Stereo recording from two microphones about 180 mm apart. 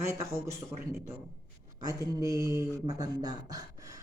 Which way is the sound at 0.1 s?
15° right (ahead or behind).